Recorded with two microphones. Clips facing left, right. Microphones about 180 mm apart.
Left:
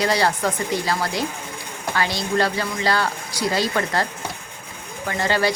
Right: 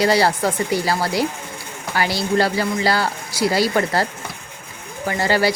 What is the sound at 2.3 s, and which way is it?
Speech, 30° right (ahead or behind).